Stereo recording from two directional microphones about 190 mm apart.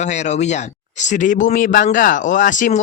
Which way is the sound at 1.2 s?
40° left (ahead or behind).